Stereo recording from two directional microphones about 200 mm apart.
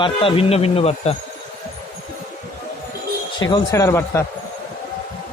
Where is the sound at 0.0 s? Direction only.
25° left (ahead or behind).